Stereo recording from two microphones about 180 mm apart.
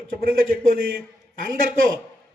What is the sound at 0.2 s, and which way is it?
Speech, 55° right (ahead or behind).